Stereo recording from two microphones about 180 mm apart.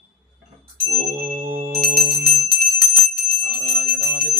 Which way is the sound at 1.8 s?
60° right (ahead or behind).